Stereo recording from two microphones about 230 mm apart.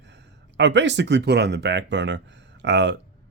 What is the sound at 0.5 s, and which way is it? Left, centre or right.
Speech, right.